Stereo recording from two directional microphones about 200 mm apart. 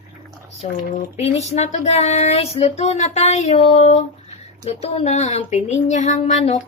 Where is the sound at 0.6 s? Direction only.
30° left (ahead or behind).